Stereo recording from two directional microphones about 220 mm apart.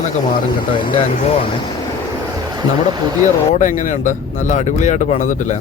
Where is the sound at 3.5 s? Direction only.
35° left (ahead or behind).